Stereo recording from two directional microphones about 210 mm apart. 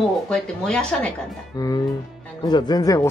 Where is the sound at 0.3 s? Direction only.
5° left (ahead or behind).